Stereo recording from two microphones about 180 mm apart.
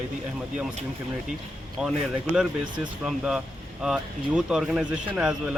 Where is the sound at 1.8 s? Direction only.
5° right (ahead or behind).